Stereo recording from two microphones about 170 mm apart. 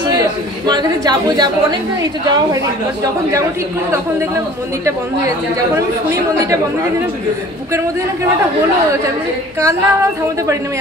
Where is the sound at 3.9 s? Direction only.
15° right (ahead or behind).